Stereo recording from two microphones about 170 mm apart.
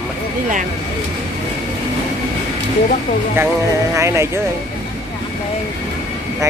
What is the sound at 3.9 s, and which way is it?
Speech, 15° right (ahead or behind).